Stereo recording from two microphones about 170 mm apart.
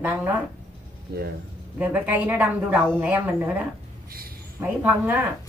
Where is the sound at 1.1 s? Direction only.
70° right (ahead or behind).